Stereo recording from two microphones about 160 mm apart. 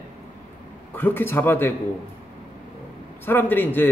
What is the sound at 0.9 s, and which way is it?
Speech, 10° left (ahead or behind).